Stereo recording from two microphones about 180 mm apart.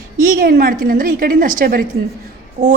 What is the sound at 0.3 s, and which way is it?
A woman's voice, 55° right (ahead or behind).